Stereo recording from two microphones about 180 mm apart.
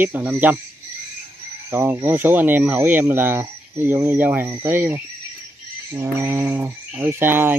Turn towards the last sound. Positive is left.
turn(degrees=-10)  # may be behind; listen again after turning